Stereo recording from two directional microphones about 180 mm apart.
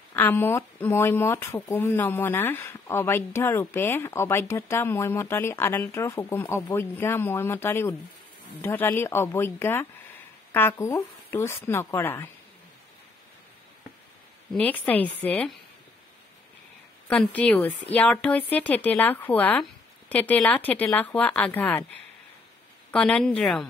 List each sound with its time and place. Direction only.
0.1 s speech: 10° left (ahead or behind)
14.5 s speech: 10° left (ahead or behind)
17.1 s speech: 5° left (ahead or behind)
22.8 s speech: 5° left (ahead or behind)